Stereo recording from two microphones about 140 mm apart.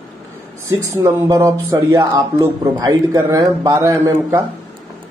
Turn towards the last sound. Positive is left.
turn(degrees=-25)  # may be behind; listen again after turning